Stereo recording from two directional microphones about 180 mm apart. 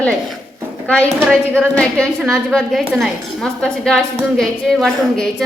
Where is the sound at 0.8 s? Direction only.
5° left (ahead or behind).